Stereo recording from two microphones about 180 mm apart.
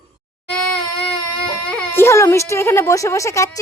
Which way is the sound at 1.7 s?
5° left (ahead or behind).